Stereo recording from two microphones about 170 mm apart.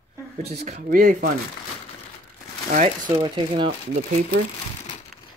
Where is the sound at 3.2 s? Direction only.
30° right (ahead or behind).